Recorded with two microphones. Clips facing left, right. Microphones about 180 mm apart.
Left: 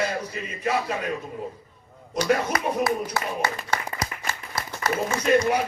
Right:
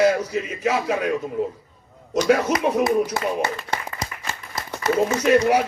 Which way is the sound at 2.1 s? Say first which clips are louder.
Right 5 dB; 70° right (ahead or behind).